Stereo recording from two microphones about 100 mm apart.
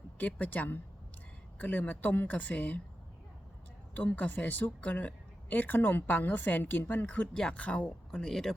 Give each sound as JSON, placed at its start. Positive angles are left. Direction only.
{"t": 0.2, "sound": "a woman's voice", "side_deg": 15}
{"t": 3.9, "sound": "a woman's voice", "side_deg": 15}